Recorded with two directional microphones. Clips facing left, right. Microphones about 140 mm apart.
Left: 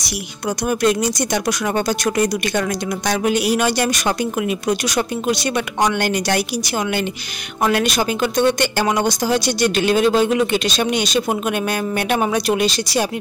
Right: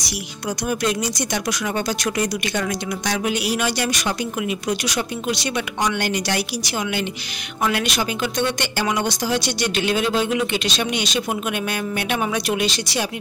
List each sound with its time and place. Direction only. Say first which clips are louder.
0.7 s speech: left 5 dB; 50° left (ahead or behind)